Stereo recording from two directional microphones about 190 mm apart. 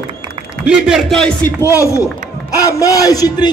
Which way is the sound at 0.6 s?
Centre (ahead or behind).